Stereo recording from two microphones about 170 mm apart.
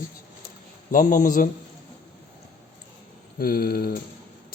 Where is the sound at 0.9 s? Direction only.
50° left (ahead or behind).